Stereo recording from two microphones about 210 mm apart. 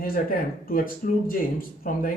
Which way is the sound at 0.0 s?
45° left (ahead or behind).